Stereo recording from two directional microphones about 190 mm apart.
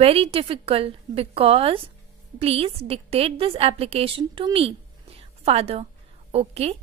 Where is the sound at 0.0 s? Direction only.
30° right (ahead or behind).